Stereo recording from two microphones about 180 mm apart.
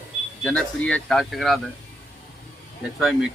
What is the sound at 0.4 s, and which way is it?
Speech, 5° left (ahead or behind).